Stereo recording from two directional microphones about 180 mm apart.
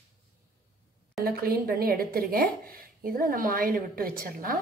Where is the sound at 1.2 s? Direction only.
55° right (ahead or behind).